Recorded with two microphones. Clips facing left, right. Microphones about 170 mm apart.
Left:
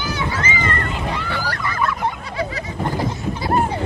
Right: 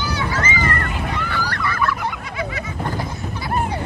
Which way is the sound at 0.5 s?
25° left (ahead or behind).